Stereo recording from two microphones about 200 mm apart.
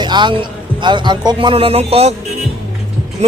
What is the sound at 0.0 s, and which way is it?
A man's voice, 20° right (ahead or behind).